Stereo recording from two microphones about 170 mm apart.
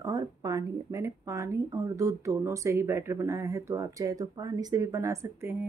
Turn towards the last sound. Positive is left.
turn(degrees=-15)  # may be behind; listen again after turning